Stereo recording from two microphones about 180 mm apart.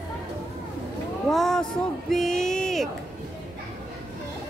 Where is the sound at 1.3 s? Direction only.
Centre (ahead or behind).